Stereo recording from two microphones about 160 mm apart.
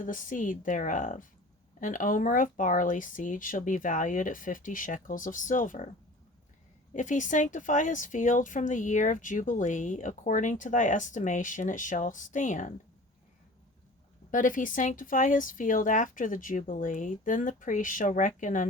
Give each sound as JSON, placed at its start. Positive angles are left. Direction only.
{"t": 0.0, "sound": "speech", "side_deg": 55}
{"t": 6.9, "sound": "a woman's voice", "side_deg": 50}
{"t": 14.3, "sound": "speech", "side_deg": 55}